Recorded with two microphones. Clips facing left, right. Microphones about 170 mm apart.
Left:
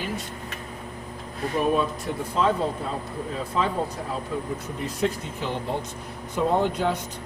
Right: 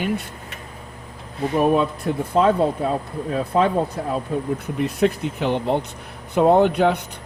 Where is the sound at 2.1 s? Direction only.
55° right (ahead or behind).